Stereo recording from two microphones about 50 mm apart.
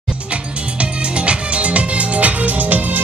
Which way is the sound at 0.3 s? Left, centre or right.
Right.